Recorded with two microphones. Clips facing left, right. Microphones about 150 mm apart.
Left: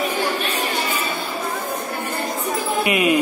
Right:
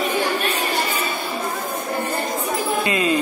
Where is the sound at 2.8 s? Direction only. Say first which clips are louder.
Left 4 dB; 15° left (ahead or behind).